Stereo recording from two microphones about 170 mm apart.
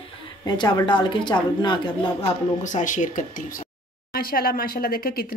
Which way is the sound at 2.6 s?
50° left (ahead or behind).